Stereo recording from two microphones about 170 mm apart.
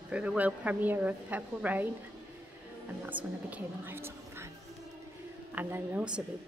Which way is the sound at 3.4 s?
10° right (ahead or behind).